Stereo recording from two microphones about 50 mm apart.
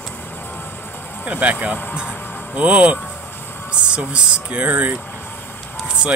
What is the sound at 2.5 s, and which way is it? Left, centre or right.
Speech, right.